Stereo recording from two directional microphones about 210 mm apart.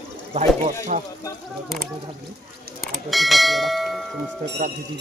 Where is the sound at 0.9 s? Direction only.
35° right (ahead or behind).